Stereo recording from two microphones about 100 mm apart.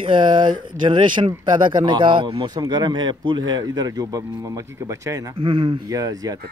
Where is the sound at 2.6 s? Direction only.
40° right (ahead or behind).